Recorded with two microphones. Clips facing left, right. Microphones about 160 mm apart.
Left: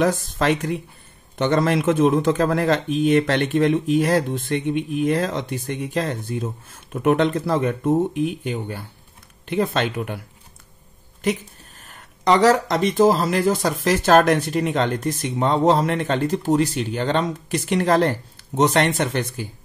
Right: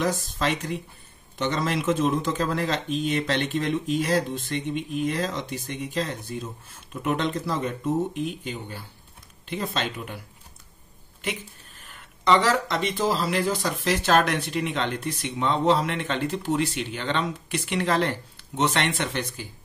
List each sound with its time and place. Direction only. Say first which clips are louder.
0.0 s speech: left 6 dB; 55° left (ahead or behind)
11.8 s speech: left 4 dB; 45° left (ahead or behind)